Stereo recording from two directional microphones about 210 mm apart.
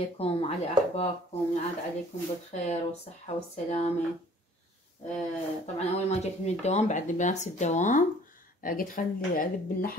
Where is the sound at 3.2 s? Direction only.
30° left (ahead or behind).